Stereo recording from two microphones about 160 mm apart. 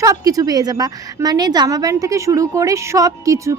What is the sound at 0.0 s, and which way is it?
A woman's voice, 20° right (ahead or behind).